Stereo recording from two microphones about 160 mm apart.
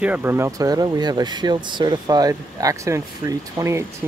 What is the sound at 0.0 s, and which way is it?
Speech, 10° right (ahead or behind).